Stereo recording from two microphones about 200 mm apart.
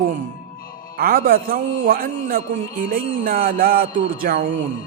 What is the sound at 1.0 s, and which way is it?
A man's voice, 50° right (ahead or behind).